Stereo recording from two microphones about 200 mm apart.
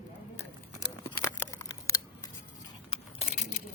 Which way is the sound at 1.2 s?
15° left (ahead or behind).